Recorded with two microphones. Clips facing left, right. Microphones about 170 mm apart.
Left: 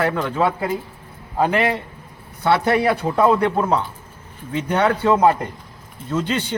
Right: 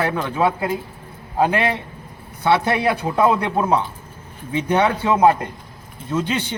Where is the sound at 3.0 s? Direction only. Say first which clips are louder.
Even; 5° right (ahead or behind).